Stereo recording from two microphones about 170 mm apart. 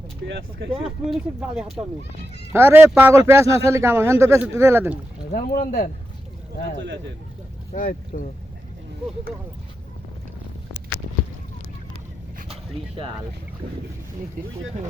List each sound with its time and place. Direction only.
0.3 s speech: 80° right
0.9 s speech: 5° right (ahead or behind)
2.5 s speech: 15° right (ahead or behind)
5.3 s speech: 55° left (ahead or behind)
7.7 s speech: 55° left (ahead or behind)